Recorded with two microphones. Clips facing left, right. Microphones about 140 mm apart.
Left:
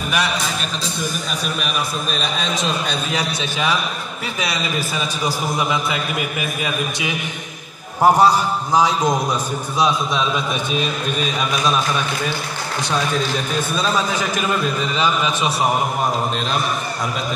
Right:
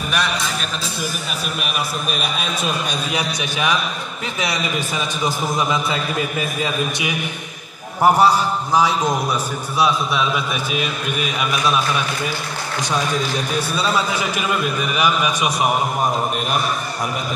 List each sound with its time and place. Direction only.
2.0 s a man's voice: 10° right (ahead or behind)
5.2 s a man's voice: 20° right (ahead or behind)
8.0 s a man's voice: 15° left (ahead or behind)
13.6 s a man's voice: 10° right (ahead or behind)